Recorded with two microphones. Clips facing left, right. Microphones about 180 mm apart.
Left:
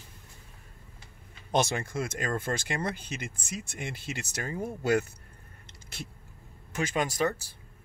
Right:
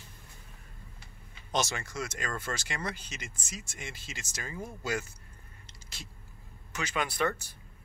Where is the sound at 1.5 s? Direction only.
55° left (ahead or behind).